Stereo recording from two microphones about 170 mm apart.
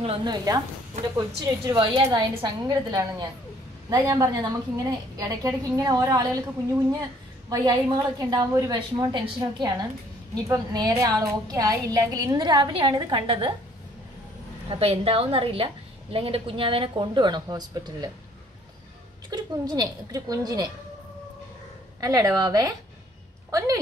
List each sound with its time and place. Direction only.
0.0 s a woman's voice: 30° right (ahead or behind)
7.4 s a woman's voice: 25° right (ahead or behind)
14.7 s a woman's voice: 35° right (ahead or behind)
19.3 s a woman's voice: 25° right (ahead or behind)
22.0 s a woman's voice: 20° right (ahead or behind)